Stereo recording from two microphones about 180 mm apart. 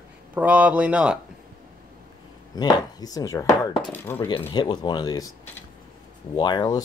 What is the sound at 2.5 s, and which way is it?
Speech, 20° left (ahead or behind).